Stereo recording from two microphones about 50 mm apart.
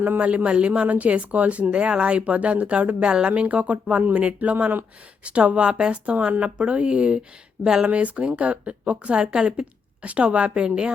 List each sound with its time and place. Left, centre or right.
0.2 s a woman's voice: right
3.4 s a woman's voice: right
4.4 s speech: right
5.2 s a woman's voice: right
7.9 s a woman's voice: right